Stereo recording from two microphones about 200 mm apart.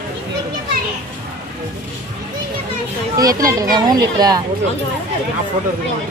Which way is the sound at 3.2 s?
20° right (ahead or behind).